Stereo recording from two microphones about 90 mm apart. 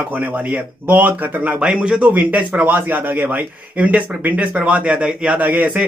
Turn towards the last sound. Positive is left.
turn(degrees=-20)  # may be behind; listen again after turning